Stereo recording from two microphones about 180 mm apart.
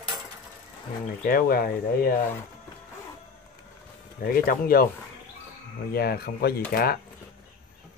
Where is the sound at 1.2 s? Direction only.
55° left (ahead or behind).